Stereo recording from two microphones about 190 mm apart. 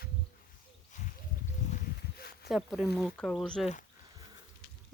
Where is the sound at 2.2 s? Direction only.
55° left (ahead or behind).